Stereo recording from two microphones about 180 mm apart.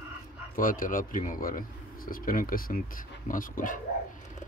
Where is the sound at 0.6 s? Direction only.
50° left (ahead or behind).